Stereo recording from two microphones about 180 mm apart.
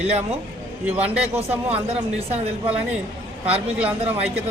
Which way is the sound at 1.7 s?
35° right (ahead or behind).